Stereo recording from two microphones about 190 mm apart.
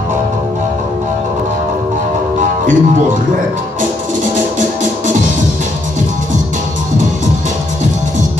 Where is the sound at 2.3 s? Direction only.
40° right (ahead or behind).